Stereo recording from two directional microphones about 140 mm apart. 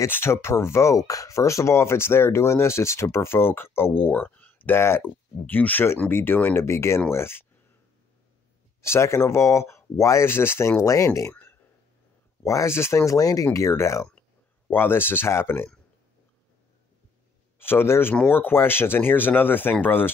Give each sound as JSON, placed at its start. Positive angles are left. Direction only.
{"t": 0.0, "sound": "speech", "side_deg": 20}
{"t": 8.8, "sound": "speech", "side_deg": 20}
{"t": 17.6, "sound": "speech", "side_deg": 15}